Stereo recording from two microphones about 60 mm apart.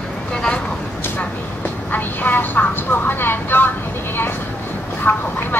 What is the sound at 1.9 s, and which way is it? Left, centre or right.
Vehicle, left.